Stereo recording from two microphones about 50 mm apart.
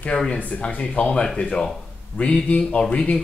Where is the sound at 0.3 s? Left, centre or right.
Left.